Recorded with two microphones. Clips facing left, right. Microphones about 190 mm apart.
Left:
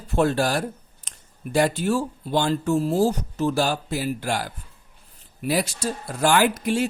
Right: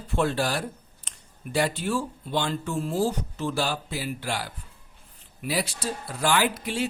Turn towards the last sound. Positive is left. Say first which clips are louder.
# left 5 dB
turn(degrees=45)  # may be behind; listen again after turning